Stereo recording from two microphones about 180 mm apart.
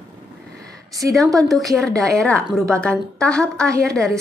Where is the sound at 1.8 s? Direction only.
Centre (ahead or behind).